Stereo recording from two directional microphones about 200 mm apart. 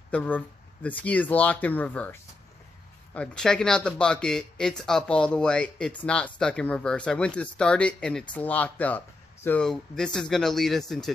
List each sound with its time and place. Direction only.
0.1 s speech: 5° left (ahead or behind)
3.2 s speech: 5° left (ahead or behind)